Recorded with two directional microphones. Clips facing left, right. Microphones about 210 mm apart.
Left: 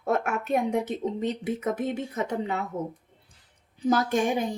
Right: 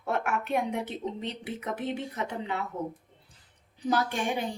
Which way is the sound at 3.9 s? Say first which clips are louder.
Left 5 dB; 40° left (ahead or behind).